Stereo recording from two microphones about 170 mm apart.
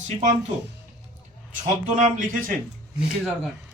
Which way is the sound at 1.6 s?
50° right (ahead or behind).